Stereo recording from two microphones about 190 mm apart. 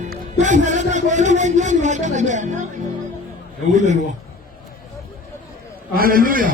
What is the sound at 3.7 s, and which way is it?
Speech, 40° right (ahead or behind).